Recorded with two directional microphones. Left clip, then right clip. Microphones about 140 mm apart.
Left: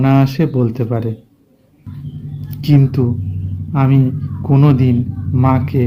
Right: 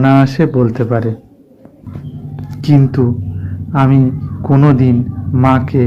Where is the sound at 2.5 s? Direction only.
15° left (ahead or behind).